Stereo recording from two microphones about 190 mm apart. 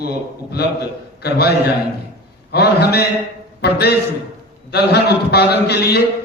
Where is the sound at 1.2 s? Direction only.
55° left (ahead or behind).